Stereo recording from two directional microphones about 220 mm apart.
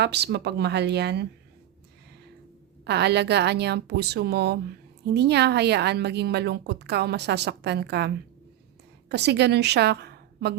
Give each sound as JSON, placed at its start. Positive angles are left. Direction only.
{"t": 0.0, "sound": "a woman's voice", "side_deg": -50}
{"t": 2.8, "sound": "a woman's voice", "side_deg": -50}